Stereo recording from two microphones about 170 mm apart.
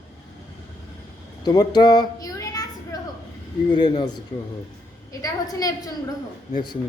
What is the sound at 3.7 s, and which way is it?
A woman's voice, 25° left (ahead or behind).